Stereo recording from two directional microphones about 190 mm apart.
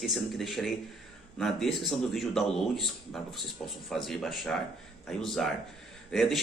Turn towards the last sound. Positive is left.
turn(degrees=0)  # may be behind; listen again after turning